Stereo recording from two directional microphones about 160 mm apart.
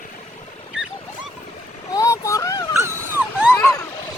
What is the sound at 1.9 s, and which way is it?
Vehicle, 20° left (ahead or behind).